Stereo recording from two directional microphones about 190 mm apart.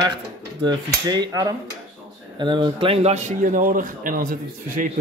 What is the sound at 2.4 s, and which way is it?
Speech, 25° right (ahead or behind).